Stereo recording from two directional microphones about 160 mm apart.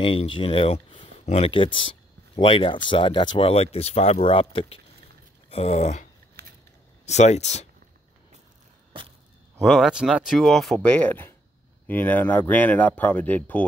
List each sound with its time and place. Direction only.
0.0 s speech: 35° left (ahead or behind)
6.4 s a sound: 90° right
7.1 s speech: 45° left (ahead or behind)
9.6 s speech: centre (ahead or behind)